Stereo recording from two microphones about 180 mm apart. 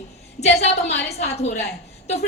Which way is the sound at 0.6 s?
40° left (ahead or behind).